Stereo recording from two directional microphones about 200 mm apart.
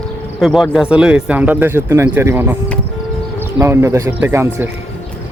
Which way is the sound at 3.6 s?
15° right (ahead or behind).